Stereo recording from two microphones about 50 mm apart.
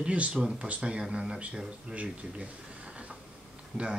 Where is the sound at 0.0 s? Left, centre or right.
Right.